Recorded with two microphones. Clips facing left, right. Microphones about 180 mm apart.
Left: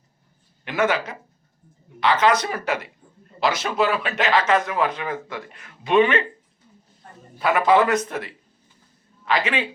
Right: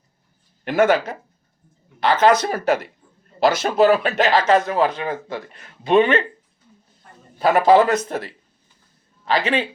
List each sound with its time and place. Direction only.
0.6 s speech: 50° right (ahead or behind); by 6.2 s 35° right (ahead or behind)
7.3 s speech: 35° right (ahead or behind)